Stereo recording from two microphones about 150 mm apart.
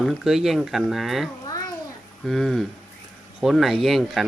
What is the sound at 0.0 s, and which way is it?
Speech, centre (ahead or behind).